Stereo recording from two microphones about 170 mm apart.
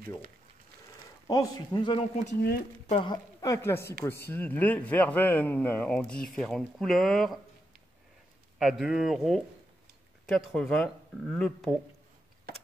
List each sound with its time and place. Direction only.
1.2 s speech: 20° left (ahead or behind)
3.3 s speech: 15° left (ahead or behind); by 7.3 s centre (ahead or behind)
8.5 s speech: 5° right (ahead or behind)